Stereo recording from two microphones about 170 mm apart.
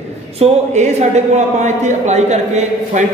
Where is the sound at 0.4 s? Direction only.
45° right (ahead or behind).